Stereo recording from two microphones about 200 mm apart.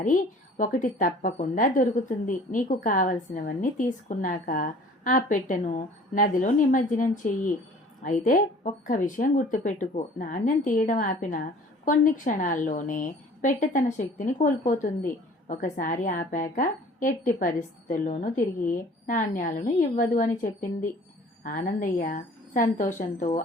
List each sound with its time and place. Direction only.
0.0 s a woman's voice: 40° left (ahead or behind)